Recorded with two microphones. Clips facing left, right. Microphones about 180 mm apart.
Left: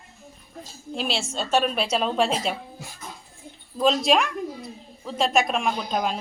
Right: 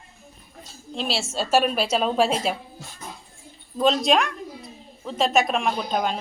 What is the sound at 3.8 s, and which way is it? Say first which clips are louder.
Speech: right 1 dB; centre (ahead or behind).